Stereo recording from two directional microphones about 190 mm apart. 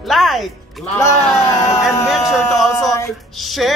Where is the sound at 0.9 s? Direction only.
15° left (ahead or behind).